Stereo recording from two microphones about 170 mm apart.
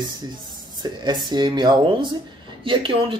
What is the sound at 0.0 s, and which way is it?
Speech, 25° right (ahead or behind).